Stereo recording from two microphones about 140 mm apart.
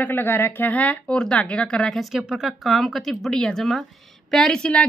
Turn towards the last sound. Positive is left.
turn(degrees=5)  # may be behind; listen again after turning